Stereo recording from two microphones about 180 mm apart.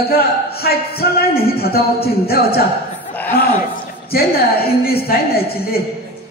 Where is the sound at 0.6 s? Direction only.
60° left (ahead or behind).